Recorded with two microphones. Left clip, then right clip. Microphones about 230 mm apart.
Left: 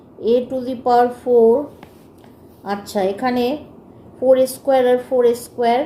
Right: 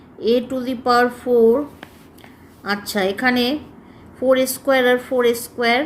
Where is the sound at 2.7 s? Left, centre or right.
Right.